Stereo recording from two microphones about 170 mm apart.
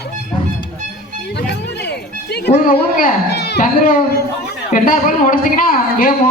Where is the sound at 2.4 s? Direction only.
65° left (ahead or behind).